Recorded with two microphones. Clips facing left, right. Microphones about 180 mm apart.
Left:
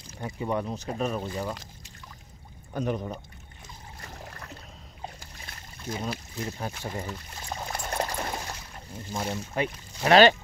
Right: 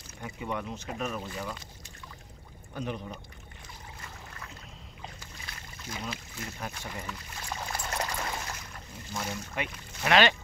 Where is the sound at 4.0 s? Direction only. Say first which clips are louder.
Left 6 dB; 40° left (ahead or behind).